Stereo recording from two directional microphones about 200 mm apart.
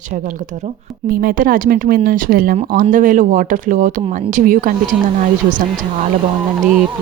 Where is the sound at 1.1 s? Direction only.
45° right (ahead or behind).